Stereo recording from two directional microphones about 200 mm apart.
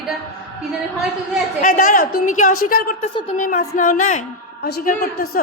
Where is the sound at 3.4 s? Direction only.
40° left (ahead or behind).